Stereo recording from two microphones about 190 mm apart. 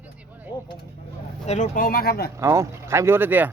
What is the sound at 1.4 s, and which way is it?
Speech, 40° left (ahead or behind).